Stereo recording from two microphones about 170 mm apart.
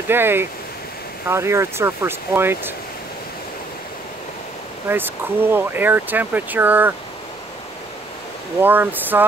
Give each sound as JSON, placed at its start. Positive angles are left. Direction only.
{"t": 0.1, "sound": "speech", "side_deg": -15}
{"t": 4.8, "sound": "speech", "side_deg": -10}
{"t": 8.5, "sound": "speech", "side_deg": -10}